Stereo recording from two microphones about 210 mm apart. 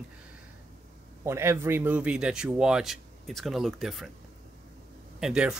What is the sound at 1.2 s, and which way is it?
Speech, 10° right (ahead or behind).